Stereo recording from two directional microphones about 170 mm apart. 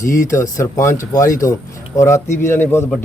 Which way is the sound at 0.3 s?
15° left (ahead or behind).